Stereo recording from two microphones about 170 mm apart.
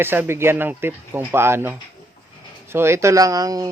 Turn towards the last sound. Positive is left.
turn(degrees=-20)  # may be behind; listen again after turning